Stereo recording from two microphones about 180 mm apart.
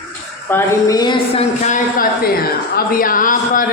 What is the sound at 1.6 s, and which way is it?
Speech, 45° left (ahead or behind).